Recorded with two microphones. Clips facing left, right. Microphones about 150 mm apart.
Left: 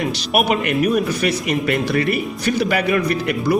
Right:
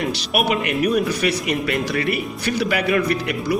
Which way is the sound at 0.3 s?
45° left (ahead or behind).